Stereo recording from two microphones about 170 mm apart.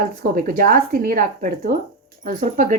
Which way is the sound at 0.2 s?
55° right (ahead or behind).